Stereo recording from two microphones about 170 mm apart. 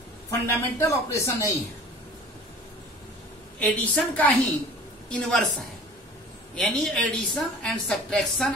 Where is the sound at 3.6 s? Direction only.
5° left (ahead or behind).